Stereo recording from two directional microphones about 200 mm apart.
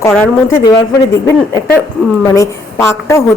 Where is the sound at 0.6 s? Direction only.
20° left (ahead or behind).